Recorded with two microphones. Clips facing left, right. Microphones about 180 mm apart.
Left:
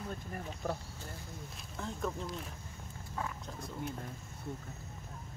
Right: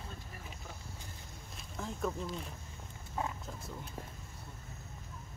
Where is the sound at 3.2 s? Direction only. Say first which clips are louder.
Right 2 dB; 25° right (ahead or behind).